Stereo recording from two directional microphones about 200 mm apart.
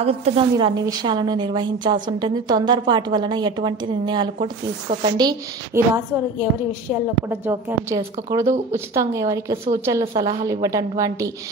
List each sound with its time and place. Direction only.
0.0 s a woman's voice: 30° right (ahead or behind); by 5.9 s 15° right (ahead or behind)
7.2 s a woman's voice: 15° right (ahead or behind)